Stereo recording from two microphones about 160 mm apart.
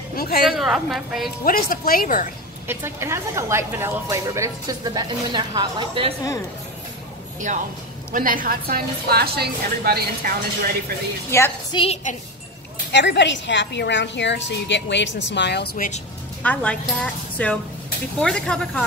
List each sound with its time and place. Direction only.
0.1 s a woman's voice: 70° left (ahead or behind)
0.5 s a woman's voice: centre (ahead or behind)
1.4 s speech: 65° left (ahead or behind)
2.7 s a woman's voice: 15° right (ahead or behind); by 6.1 s 30° right (ahead or behind)
7.3 s a woman's voice: 55° right (ahead or behind); by 10.3 s 75° right (ahead or behind)
11.2 s speech: 15° left (ahead or behind)
11.7 s a woman's voice: 35° left (ahead or behind)
12.9 s a woman's voice: 90° left; by 15.9 s 70° left (ahead or behind)
16.4 s a woman's voice: 5° left (ahead or behind)